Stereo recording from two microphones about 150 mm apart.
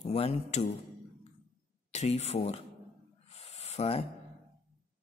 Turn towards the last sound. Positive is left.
turn(degrees=45)  # may be behind; listen again after turning